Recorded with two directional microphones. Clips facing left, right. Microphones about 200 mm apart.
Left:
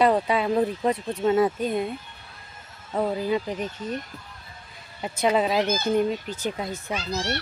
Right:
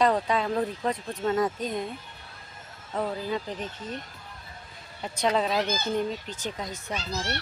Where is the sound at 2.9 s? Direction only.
15° left (ahead or behind).